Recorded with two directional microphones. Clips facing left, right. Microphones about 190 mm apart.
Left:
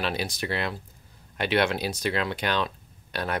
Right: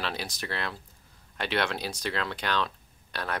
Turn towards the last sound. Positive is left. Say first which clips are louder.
# left 4 dB
turn(degrees=15)  # may be behind; listen again after turning